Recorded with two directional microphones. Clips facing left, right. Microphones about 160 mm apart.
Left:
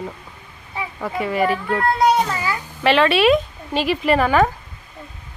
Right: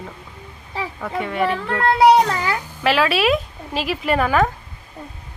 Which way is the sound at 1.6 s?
75° right (ahead or behind).